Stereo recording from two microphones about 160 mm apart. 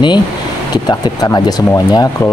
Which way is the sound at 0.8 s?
25° left (ahead or behind).